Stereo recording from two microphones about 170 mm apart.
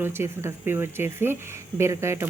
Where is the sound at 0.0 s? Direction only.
15° right (ahead or behind).